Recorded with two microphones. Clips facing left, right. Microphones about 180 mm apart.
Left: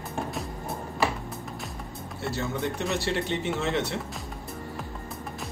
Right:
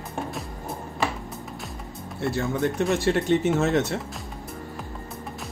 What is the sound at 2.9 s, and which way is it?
Speech, 45° right (ahead or behind).